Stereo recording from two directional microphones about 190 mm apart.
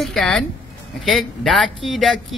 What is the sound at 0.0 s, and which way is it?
Speech, centre (ahead or behind).